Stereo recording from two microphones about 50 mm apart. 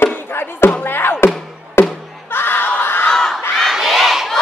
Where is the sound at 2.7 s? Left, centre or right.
Left.